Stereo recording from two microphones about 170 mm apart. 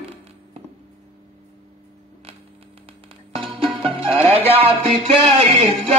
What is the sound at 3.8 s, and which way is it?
Music, 30° right (ahead or behind).